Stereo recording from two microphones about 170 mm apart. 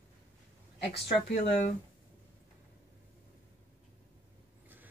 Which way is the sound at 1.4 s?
45° left (ahead or behind).